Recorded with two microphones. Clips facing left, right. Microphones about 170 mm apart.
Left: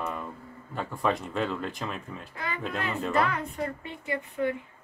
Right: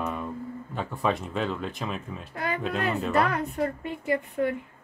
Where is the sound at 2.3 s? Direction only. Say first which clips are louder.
Right 5 dB; 45° right (ahead or behind).